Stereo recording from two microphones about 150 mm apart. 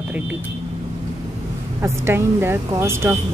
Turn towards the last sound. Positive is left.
turn(degrees=-15)  # may be behind; listen again after turning